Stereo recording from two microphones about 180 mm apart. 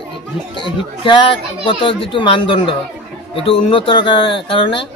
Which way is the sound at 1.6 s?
25° left (ahead or behind).